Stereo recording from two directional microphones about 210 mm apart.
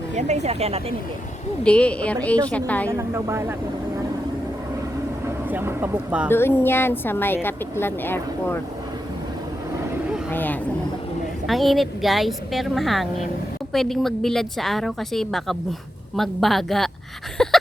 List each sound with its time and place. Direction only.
0.2 s speech: 35° right (ahead or behind)
1.6 s a woman's voice: 5° left (ahead or behind)
3.0 s speech: 10° right (ahead or behind)
5.5 s speech: 10° right (ahead or behind)
6.3 s a woman's voice: 10° left (ahead or behind)
10.3 s a woman's voice: 10° left (ahead or behind)
17.3 s a sound: 5° left (ahead or behind)